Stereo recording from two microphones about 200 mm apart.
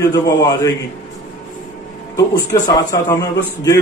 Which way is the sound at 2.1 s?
20° left (ahead or behind).